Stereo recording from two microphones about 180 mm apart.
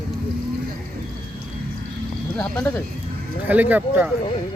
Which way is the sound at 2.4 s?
5° left (ahead or behind).